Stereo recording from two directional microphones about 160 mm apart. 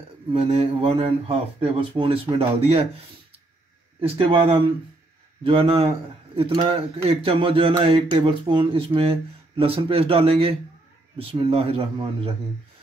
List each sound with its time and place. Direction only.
0.3 s speech: 35° right (ahead or behind)
4.0 s speech: 35° right (ahead or behind)